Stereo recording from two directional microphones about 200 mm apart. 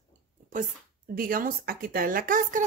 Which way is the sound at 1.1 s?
45° right (ahead or behind).